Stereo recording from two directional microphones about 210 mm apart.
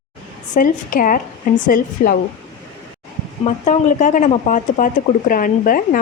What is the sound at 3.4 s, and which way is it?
A woman's voice, 35° left (ahead or behind).